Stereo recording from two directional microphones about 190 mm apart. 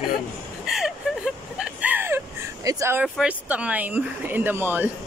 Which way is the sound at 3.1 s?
5° right (ahead or behind).